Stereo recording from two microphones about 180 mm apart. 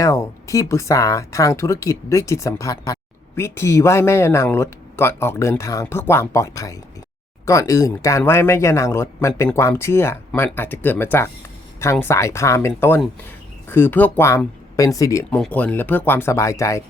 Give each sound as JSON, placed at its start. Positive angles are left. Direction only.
{"t": 0.0, "sound": "speech", "side_deg": 15}